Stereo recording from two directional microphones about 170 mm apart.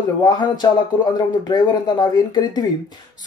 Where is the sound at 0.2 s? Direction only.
25° left (ahead or behind).